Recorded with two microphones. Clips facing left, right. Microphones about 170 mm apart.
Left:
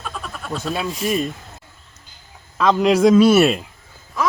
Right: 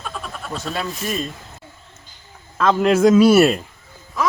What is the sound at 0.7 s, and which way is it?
Speech, 15° left (ahead or behind).